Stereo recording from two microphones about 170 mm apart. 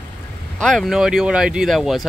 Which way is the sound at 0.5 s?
Centre (ahead or behind).